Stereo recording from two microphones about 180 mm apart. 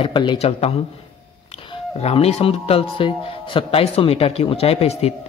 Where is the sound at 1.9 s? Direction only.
35° left (ahead or behind).